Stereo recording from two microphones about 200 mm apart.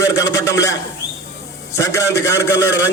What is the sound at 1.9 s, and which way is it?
Speech, 15° left (ahead or behind).